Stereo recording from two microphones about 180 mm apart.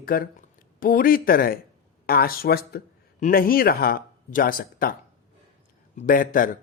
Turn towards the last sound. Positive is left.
turn(degrees=50)  # may be behind; listen again after turning